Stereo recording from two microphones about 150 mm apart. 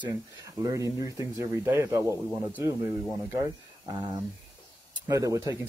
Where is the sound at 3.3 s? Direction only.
25° right (ahead or behind).